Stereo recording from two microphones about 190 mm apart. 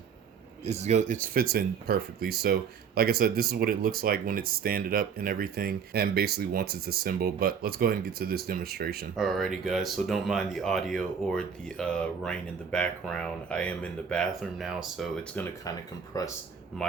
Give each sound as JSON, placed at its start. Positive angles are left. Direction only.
{"t": 0.6, "sound": "speech", "side_deg": -35}
{"t": 9.1, "sound": "speech", "side_deg": 0}
{"t": 16.1, "sound": "speech", "side_deg": 20}